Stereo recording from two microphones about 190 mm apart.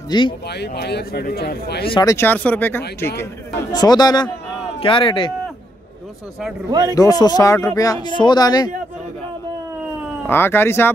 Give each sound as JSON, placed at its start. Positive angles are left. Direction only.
{"t": 0.1, "sound": "speech", "side_deg": 20}
{"t": 0.5, "sound": "a man's voice", "side_deg": 60}
{"t": 2.0, "sound": "speech", "side_deg": 15}
{"t": 3.7, "sound": "speech", "side_deg": 20}
{"t": 6.7, "sound": "a man's voice", "side_deg": -15}
{"t": 7.0, "sound": "speech", "side_deg": 20}
{"t": 10.2, "sound": "speech", "side_deg": 10}